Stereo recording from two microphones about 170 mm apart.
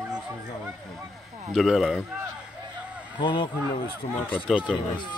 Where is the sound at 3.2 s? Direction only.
30° left (ahead or behind).